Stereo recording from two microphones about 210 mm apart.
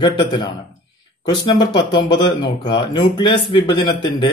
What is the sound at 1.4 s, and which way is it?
Speech, 20° left (ahead or behind).